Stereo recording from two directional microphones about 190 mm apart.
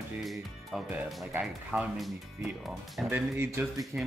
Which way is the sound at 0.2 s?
Centre (ahead or behind).